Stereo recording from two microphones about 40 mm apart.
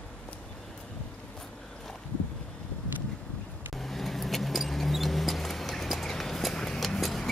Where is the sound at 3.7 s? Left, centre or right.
Centre.